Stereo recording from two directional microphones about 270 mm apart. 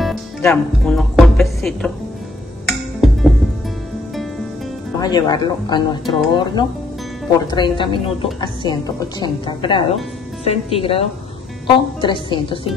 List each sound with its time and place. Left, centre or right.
0.0 s music: centre
5.0 s a woman's voice: centre